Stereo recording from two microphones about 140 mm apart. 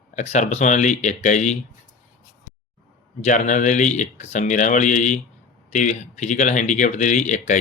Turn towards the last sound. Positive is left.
turn(degrees=60)  # may be behind; listen again after turning